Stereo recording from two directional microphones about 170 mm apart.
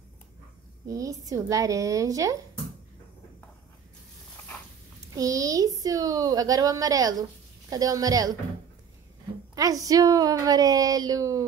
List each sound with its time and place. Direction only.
0.8 s a woman's voice: 20° right (ahead or behind)
5.1 s a woman's voice: 20° right (ahead or behind)
9.6 s a woman's voice: 20° right (ahead or behind)